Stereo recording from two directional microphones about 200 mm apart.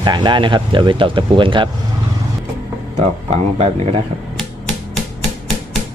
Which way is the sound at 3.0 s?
35° right (ahead or behind).